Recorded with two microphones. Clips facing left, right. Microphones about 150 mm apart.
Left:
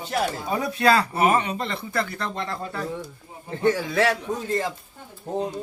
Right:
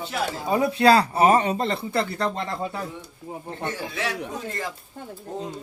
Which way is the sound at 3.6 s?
80° left.